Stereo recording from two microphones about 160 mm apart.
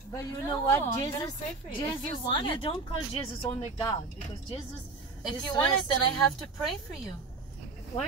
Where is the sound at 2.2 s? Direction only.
30° left (ahead or behind).